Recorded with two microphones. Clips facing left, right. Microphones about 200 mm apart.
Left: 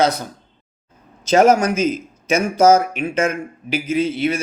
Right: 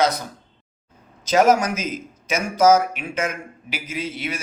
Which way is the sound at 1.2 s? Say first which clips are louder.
Left 3 dB; 30° left (ahead or behind).